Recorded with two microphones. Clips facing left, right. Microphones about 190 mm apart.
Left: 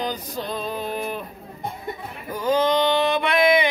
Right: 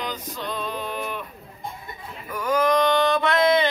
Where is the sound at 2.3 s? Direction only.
25° left (ahead or behind).